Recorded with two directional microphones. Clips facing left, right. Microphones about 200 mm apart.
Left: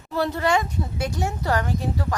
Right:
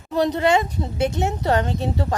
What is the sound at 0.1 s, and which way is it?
A woman's voice, 20° right (ahead or behind).